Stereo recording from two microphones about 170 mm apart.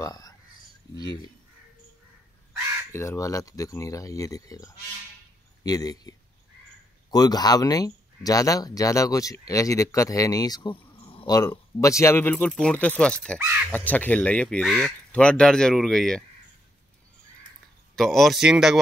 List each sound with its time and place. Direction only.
0.0 s a sound: 20° left (ahead or behind)
0.9 s speech: 20° left (ahead or behind)
2.9 s speech: 15° left (ahead or behind)
17.9 s speech: centre (ahead or behind)